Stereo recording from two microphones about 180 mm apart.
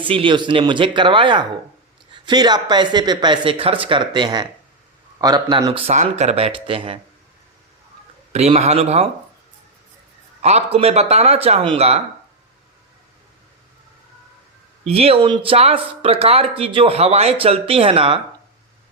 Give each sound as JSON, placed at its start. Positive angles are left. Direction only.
{"t": 0.0, "sound": "speech", "side_deg": -30}
{"t": 5.7, "sound": "speech", "side_deg": -35}
{"t": 8.3, "sound": "speech", "side_deg": -35}
{"t": 10.4, "sound": "speech", "side_deg": -35}
{"t": 14.8, "sound": "speech", "side_deg": -35}